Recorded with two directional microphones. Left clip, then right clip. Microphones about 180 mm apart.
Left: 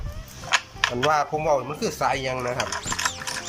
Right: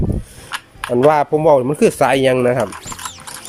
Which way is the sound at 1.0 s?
45° right (ahead or behind).